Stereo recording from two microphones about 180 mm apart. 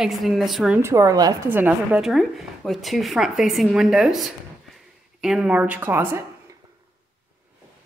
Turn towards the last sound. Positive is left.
turn(degrees=-15)  # may be behind; listen again after turning